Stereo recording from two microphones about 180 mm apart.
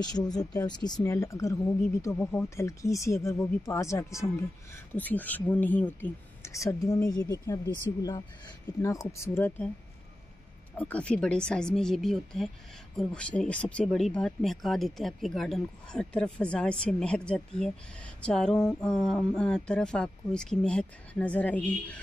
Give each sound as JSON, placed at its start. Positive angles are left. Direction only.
{"t": 0.0, "sound": "speech", "side_deg": 20}
{"t": 10.8, "sound": "speech", "side_deg": 5}